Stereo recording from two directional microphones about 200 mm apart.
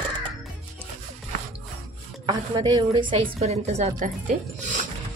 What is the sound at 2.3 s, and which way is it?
A woman's voice, 20° right (ahead or behind).